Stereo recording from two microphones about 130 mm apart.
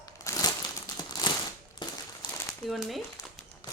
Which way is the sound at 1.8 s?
35° left (ahead or behind).